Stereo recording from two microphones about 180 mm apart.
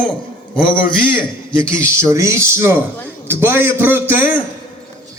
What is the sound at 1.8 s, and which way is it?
A man's voice, 15° right (ahead or behind).